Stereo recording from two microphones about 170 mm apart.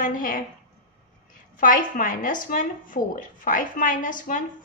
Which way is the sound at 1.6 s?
55° left (ahead or behind).